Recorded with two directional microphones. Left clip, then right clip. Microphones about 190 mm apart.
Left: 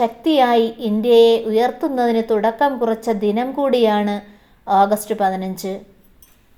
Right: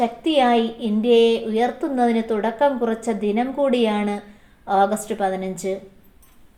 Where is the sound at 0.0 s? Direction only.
35° left (ahead or behind).